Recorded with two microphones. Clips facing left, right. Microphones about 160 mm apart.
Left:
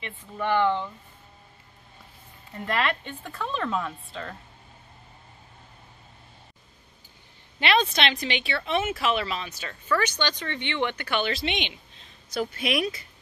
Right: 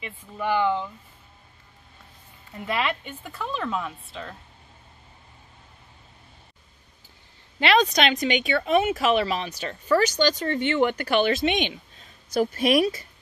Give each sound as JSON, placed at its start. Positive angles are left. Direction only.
{"t": 0.0, "sound": "speech", "side_deg": -10}
{"t": 2.5, "sound": "speech", "side_deg": -5}
{"t": 7.6, "sound": "speech", "side_deg": -35}